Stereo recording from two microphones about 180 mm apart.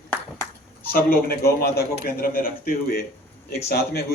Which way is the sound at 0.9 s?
55° left (ahead or behind).